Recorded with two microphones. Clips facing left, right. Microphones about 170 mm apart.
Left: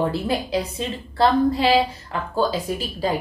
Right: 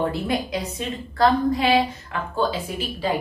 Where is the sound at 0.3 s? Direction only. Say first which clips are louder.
Left 2 dB; 30° left (ahead or behind).